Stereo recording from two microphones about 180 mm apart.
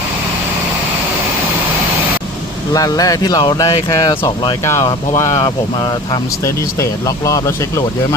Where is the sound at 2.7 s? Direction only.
20° left (ahead or behind).